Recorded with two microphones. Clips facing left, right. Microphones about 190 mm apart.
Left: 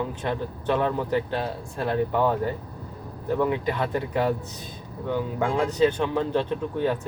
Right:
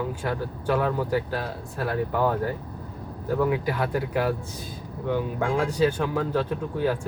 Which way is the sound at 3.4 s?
5° right (ahead or behind).